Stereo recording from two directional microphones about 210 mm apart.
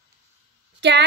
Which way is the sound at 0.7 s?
55° right (ahead or behind).